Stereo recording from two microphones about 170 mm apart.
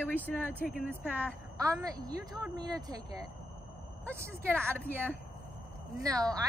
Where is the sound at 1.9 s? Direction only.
20° right (ahead or behind).